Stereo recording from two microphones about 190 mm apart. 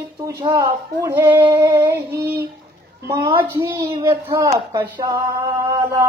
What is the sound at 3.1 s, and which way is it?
Speech, 20° right (ahead or behind).